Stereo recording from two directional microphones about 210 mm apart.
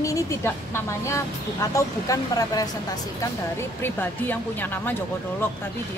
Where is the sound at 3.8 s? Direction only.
10° left (ahead or behind).